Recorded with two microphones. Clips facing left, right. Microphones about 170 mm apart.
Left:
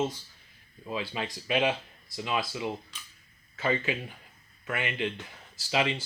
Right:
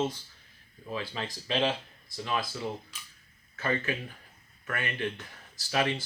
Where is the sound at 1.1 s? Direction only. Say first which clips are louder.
Left 2 dB; 10° left (ahead or behind).